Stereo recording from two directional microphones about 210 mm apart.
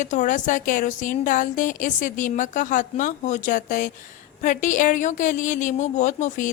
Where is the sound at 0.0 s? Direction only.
35° left (ahead or behind).